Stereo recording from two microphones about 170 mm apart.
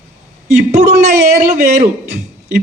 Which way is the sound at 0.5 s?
40° right (ahead or behind).